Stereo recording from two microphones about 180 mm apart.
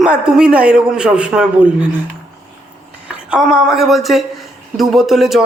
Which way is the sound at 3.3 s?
5° right (ahead or behind).